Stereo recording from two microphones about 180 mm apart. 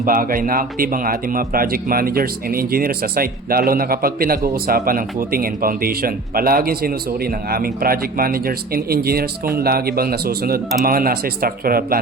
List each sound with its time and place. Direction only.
0.0 s a man's voice: 50° right (ahead or behind)